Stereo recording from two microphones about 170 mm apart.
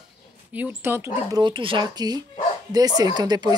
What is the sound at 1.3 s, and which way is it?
A woman's voice, 30° right (ahead or behind).